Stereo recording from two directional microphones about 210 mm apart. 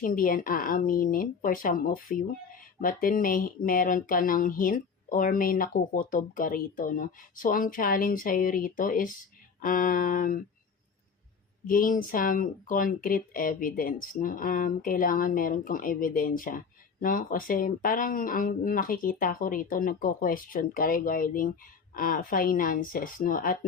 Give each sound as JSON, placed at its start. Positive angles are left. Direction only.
{"t": 0.0, "sound": "speech", "side_deg": 40}
{"t": 11.7, "sound": "speech", "side_deg": 40}